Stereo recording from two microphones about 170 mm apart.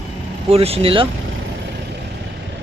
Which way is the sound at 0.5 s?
35° right (ahead or behind).